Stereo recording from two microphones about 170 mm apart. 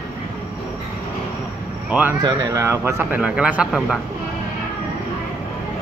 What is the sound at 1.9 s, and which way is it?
Speech, 10° right (ahead or behind).